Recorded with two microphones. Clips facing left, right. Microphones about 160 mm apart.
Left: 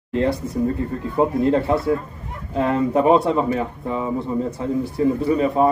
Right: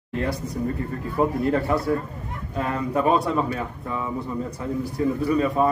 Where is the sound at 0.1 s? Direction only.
25° left (ahead or behind).